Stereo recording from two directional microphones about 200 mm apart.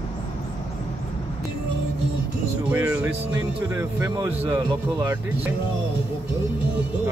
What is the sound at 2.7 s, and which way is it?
Speech, 10° right (ahead or behind).